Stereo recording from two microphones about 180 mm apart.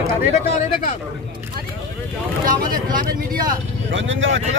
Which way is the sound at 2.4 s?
50° right (ahead or behind).